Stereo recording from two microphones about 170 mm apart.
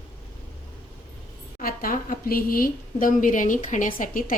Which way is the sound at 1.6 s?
55° left (ahead or behind).